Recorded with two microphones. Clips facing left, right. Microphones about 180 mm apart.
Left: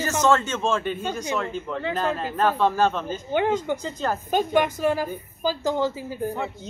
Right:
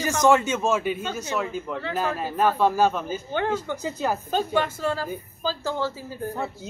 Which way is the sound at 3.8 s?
10° right (ahead or behind).